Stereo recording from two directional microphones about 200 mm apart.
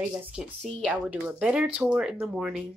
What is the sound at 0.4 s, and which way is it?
Speech, 5° right (ahead or behind).